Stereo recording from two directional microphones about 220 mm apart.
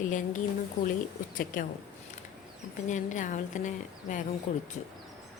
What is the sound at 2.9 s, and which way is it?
A woman's voice, 35° left (ahead or behind).